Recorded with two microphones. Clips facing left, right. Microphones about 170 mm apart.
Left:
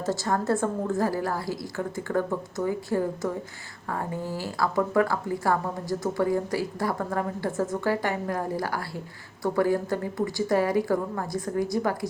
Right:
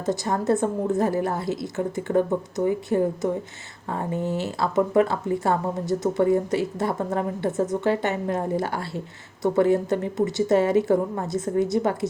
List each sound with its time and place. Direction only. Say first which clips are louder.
0.0 s speech: right 2 dB; 20° right (ahead or behind)